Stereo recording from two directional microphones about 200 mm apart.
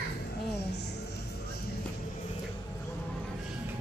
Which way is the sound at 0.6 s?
55° left (ahead or behind).